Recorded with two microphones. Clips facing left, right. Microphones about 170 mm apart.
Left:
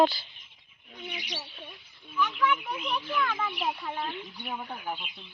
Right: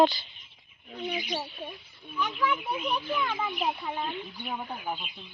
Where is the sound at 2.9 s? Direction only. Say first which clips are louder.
Left 4 dB; 15° right (ahead or behind).